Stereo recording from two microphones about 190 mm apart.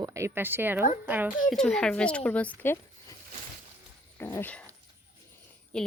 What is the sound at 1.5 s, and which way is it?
Speech, 5° left (ahead or behind).